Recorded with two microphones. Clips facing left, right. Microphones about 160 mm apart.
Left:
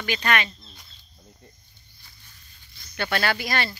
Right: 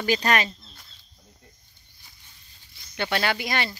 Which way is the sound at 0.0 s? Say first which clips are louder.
Right 2 dB; 35° right (ahead or behind).